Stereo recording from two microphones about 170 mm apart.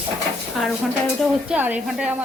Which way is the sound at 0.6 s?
Centre (ahead or behind).